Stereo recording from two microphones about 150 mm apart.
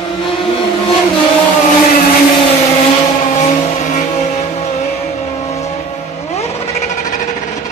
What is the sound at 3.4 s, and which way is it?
Vehicle, 55° left (ahead or behind).